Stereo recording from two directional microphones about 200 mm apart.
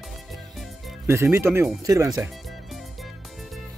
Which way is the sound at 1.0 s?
15° right (ahead or behind).